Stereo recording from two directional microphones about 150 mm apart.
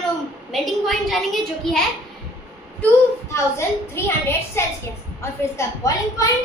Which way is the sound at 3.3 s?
15° left (ahead or behind).